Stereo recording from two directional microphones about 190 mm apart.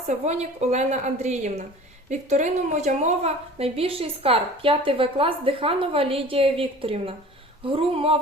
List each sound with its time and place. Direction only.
0.1 s a woman's voice: 35° right (ahead or behind)